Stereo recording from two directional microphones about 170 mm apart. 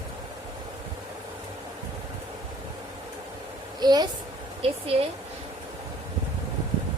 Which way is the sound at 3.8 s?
25° right (ahead or behind).